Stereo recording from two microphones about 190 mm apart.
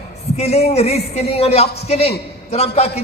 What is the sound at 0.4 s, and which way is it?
A man's voice, 35° left (ahead or behind).